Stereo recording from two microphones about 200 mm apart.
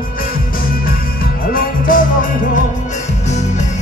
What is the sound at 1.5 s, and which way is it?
Music, 45° left (ahead or behind).